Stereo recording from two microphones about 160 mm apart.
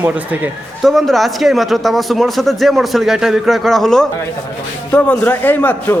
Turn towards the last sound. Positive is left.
turn(degrees=10)  # may be behind; listen again after turning